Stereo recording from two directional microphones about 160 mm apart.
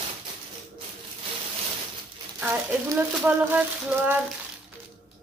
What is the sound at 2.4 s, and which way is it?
Speech, 10° right (ahead or behind).